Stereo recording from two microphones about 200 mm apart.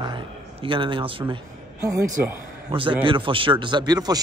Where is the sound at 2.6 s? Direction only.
25° right (ahead or behind).